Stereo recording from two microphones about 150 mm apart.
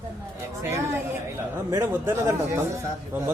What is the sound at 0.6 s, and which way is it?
A man's voice, 15° right (ahead or behind).